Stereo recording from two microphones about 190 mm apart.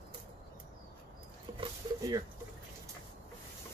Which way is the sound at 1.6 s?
20° right (ahead or behind).